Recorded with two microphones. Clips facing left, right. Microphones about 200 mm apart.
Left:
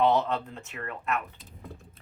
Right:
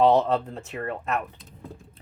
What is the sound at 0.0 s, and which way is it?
Speech, 35° right (ahead or behind).